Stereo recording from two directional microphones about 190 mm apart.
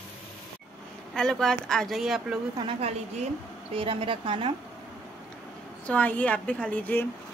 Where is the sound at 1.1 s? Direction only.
5° left (ahead or behind).